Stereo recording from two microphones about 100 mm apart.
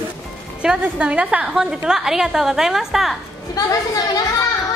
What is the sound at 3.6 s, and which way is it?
Speech, 40° left (ahead or behind).